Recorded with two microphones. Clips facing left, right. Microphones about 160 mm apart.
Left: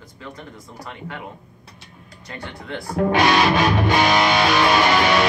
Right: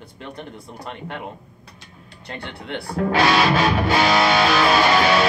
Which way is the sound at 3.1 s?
20° left (ahead or behind).